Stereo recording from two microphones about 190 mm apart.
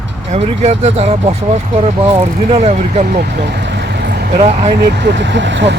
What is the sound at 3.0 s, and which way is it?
Vehicle, 55° right (ahead or behind).